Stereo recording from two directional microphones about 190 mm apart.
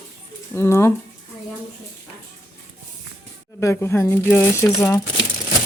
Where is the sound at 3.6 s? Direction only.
15° left (ahead or behind).